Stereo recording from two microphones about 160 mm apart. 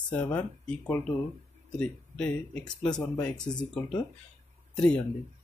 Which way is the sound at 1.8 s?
5° left (ahead or behind).